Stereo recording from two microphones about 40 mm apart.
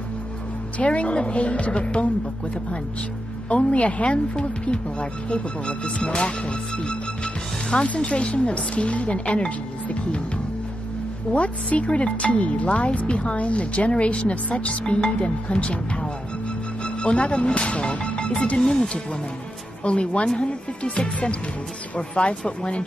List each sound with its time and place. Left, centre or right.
0.7 s speech: left
3.4 s speech: left
18.6 s speech: centre
19.8 s speech: left